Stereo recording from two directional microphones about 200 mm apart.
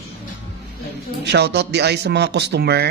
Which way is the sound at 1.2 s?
55° right (ahead or behind).